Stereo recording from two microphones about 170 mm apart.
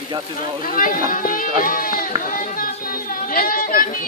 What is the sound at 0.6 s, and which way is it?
Speech, 55° left (ahead or behind).